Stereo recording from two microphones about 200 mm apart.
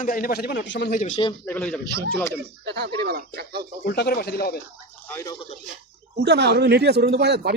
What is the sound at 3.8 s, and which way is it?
Speech, 50° left (ahead or behind).